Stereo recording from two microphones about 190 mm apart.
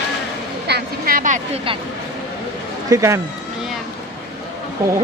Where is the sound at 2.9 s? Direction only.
15° right (ahead or behind).